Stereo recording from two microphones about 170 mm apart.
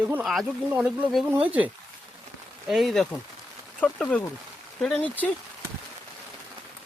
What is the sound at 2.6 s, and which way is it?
Speech, centre (ahead or behind).